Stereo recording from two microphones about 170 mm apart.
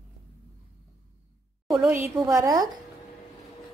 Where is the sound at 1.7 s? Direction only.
10° right (ahead or behind).